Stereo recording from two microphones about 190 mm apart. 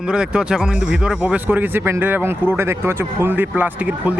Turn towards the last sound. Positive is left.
turn(degrees=-10)  # may be behind; listen again after turning